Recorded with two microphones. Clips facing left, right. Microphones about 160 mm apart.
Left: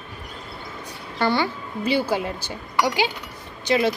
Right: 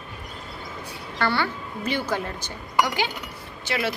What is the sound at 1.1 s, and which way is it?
A woman's voice, 15° left (ahead or behind).